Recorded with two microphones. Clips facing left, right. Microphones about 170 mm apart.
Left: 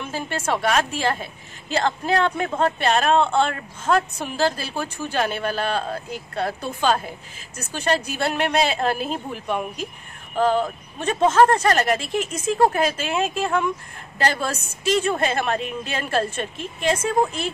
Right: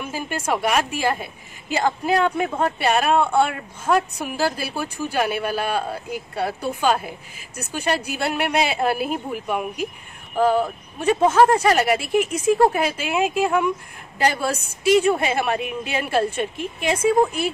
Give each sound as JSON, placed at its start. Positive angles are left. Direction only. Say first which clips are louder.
{"t": 0.0, "sound": "a woman's voice", "louder": "even", "side_deg": -10}
{"t": 12.5, "sound": "speech", "louder": "left 1 dB", "side_deg": 0}
{"t": 12.8, "sound": "a woman's voice", "louder": "right 1 dB", "side_deg": -10}